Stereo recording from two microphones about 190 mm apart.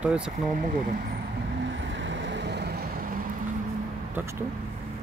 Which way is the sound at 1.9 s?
70° right (ahead or behind).